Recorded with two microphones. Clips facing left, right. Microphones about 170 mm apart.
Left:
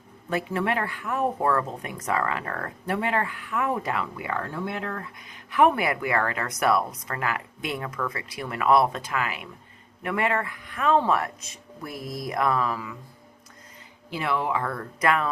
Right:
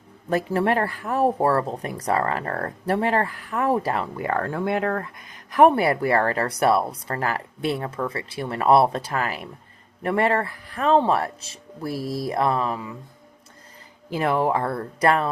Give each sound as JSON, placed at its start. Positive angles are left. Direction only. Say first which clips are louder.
{"t": 0.3, "sound": "speech", "louder": "right 5 dB", "side_deg": -40}
{"t": 14.1, "sound": "speech", "louder": "right 5 dB", "side_deg": -45}